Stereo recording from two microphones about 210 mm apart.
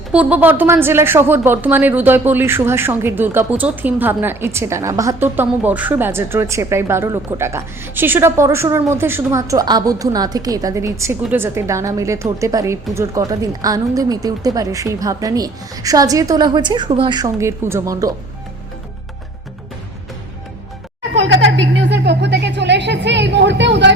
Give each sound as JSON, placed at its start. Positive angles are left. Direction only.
{"t": 0.1, "sound": "speech", "side_deg": -5}
{"t": 21.2, "sound": "a woman's voice", "side_deg": -60}